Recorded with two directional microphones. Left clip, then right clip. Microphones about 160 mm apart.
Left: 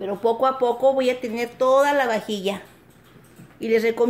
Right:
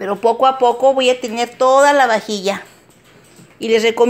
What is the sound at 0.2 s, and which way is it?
Speech, 15° right (ahead or behind).